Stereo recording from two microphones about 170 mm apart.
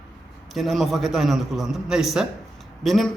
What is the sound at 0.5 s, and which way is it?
A man's voice, centre (ahead or behind).